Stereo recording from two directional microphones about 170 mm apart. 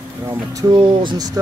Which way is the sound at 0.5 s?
25° right (ahead or behind).